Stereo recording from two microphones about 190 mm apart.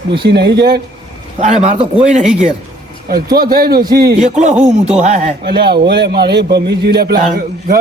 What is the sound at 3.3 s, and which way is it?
A man's voice, 50° right (ahead or behind).